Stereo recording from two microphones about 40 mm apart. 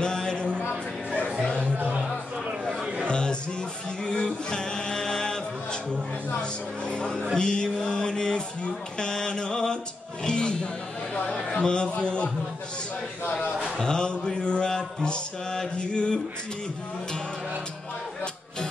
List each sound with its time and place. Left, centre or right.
0.0 s a sound: centre
1.4 s music: left
1.9 s music: centre
3.1 s a sound: left
4.0 s chant: centre
6.4 s music: left
7.3 s mantra: left
10.2 s music: left
11.5 s a sound: left
11.9 s music: left
13.7 s mantra: centre